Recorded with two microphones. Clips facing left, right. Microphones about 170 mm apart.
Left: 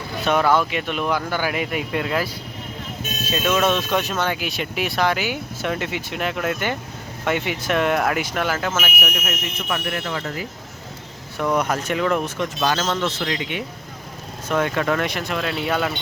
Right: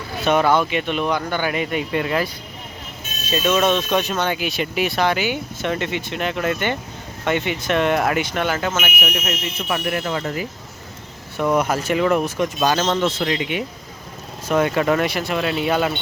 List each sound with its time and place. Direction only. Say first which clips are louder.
0.3 s speech: right 2 dB; centre (ahead or behind)
9.6 s speech: right 4 dB; 20° right (ahead or behind)
11.3 s speech: right 2 dB; 5° right (ahead or behind)
14.5 s speech: right 3 dB; 10° right (ahead or behind)